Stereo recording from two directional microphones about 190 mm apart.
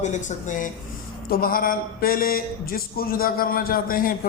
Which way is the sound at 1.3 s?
50° left (ahead or behind).